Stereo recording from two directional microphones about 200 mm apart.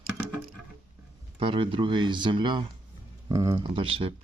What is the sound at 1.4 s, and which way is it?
Speech, 25° right (ahead or behind).